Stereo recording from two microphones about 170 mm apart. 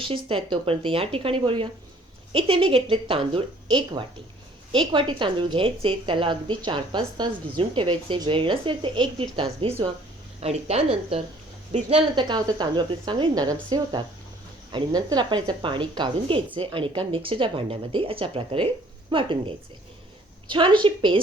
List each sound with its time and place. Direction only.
0.0 s a woman's voice: 30° right (ahead or behind)